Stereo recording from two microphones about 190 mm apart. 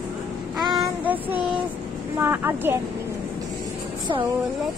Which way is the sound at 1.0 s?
10° right (ahead or behind).